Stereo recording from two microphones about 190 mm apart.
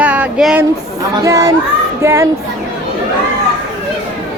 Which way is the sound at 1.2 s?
15° right (ahead or behind).